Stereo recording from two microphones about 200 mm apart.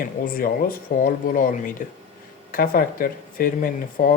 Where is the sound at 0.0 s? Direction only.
45° left (ahead or behind).